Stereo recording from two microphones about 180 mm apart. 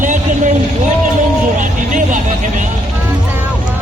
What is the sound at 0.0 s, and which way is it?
Vehicle, 45° right (ahead or behind).